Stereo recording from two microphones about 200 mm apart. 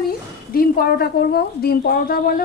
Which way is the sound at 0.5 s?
50° left (ahead or behind).